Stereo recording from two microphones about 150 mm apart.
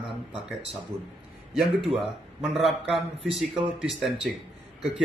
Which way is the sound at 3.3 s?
5° right (ahead or behind).